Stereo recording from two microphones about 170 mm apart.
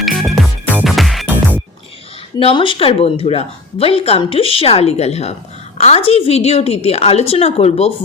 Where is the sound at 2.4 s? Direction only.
30° left (ahead or behind).